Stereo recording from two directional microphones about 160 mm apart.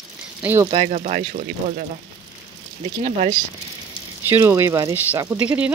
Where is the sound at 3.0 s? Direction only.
50° right (ahead or behind).